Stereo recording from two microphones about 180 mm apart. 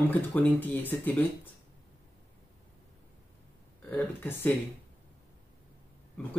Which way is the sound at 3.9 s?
10° left (ahead or behind).